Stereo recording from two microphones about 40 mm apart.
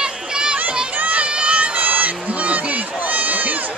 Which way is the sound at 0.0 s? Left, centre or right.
Right.